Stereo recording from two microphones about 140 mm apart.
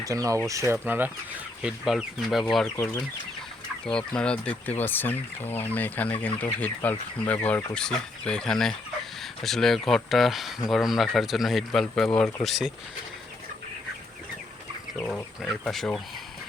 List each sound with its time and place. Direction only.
0.0 s speech: 25° right (ahead or behind); by 2.4 s 5° right (ahead or behind)
3.8 s speech: 5° left (ahead or behind)
14.9 s speech: 10° left (ahead or behind)